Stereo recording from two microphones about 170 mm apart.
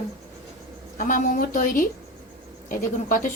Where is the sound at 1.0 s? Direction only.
55° left (ahead or behind).